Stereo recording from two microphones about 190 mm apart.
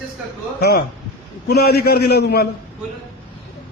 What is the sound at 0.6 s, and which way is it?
A man's voice, 55° left (ahead or behind).